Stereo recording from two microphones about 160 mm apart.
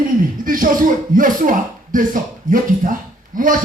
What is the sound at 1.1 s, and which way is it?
Speech, 60° right (ahead or behind).